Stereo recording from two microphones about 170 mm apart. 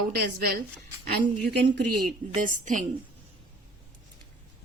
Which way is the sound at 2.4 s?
50° right (ahead or behind).